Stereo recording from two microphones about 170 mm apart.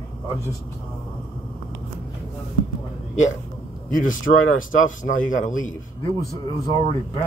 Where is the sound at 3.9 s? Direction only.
50° left (ahead or behind).